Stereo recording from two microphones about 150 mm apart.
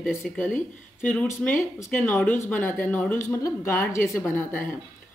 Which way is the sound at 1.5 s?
20° left (ahead or behind).